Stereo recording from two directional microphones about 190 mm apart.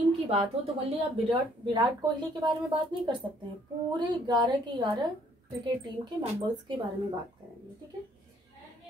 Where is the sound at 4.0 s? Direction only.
25° right (ahead or behind).